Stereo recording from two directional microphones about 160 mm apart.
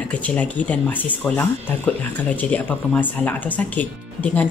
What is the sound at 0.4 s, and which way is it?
Speech, 10° left (ahead or behind).